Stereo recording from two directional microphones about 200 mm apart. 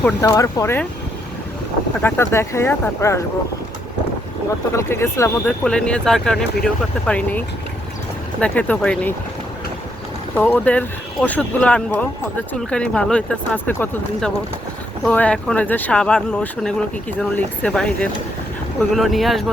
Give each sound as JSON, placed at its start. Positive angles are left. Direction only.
{"t": 0.0, "sound": "speech", "side_deg": 15}
{"t": 2.0, "sound": "speech", "side_deg": 10}
{"t": 4.7, "sound": "speech", "side_deg": 15}
{"t": 10.3, "sound": "speech", "side_deg": 5}